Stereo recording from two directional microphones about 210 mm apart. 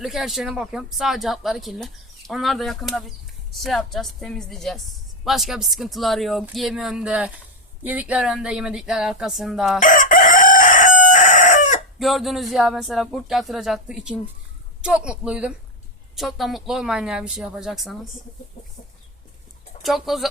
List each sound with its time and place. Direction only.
0.0 s speech: centre (ahead or behind)
9.8 s chicken: 40° left (ahead or behind)
11.9 s speech: centre (ahead or behind)
19.8 s speech: centre (ahead or behind)